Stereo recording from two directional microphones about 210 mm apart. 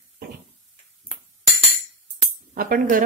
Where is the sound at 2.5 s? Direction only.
40° right (ahead or behind).